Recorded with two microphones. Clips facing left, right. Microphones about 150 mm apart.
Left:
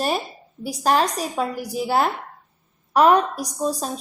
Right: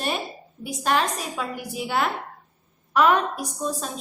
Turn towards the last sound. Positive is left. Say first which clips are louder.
# left 4 dB
turn(degrees=40)  # may be behind; listen again after turning